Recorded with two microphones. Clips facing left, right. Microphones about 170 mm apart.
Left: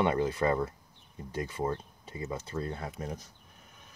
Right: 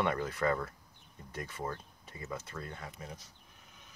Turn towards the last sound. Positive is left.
turn(degrees=45)  # may be behind; listen again after turning